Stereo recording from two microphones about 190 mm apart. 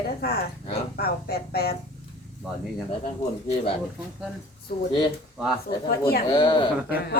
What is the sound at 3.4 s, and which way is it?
Speech, 30° left (ahead or behind).